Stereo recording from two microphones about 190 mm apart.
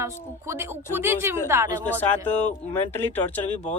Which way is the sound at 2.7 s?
10° left (ahead or behind).